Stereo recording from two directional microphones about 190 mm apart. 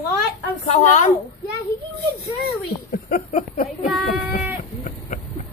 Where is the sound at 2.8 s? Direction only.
45° left (ahead or behind).